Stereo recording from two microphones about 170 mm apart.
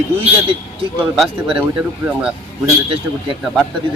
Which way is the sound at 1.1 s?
Centre (ahead or behind).